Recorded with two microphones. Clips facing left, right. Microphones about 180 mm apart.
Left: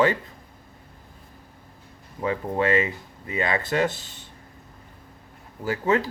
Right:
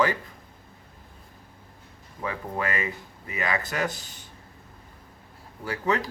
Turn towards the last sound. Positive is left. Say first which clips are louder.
# left 4 dB
turn(degrees=25)  # may be behind; listen again after turning